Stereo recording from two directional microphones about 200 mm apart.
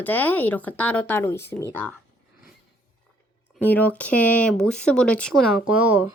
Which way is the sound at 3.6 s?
10° left (ahead or behind).